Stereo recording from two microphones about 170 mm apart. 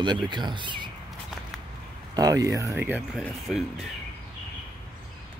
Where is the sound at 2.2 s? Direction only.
20° right (ahead or behind).